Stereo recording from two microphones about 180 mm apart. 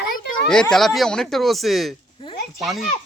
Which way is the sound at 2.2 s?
30° left (ahead or behind).